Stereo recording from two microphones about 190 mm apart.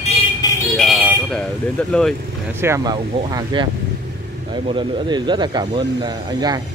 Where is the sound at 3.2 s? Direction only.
25° right (ahead or behind).